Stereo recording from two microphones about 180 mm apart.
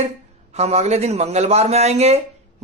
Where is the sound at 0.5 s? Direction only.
35° right (ahead or behind).